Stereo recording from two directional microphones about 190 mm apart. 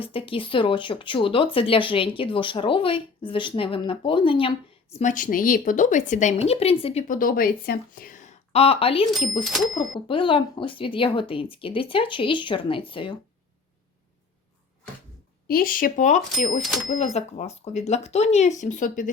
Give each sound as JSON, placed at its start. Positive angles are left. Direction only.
{"t": 0.0, "sound": "speech", "side_deg": 30}
{"t": 7.1, "sound": "speech", "side_deg": 45}
{"t": 8.5, "sound": "speech", "side_deg": 30}
{"t": 9.4, "sound": "speech", "side_deg": 0}
{"t": 10.1, "sound": "speech", "side_deg": 25}
{"t": 15.4, "sound": "speech", "side_deg": 50}